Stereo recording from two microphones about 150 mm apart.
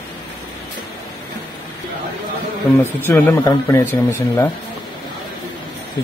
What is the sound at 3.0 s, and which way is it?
Speech, 15° left (ahead or behind).